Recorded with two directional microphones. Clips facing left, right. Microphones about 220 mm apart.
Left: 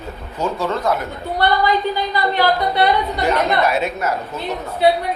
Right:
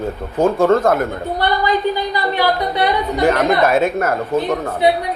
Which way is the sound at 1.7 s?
15° right (ahead or behind).